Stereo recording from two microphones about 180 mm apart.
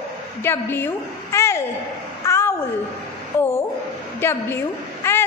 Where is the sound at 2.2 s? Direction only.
15° left (ahead or behind).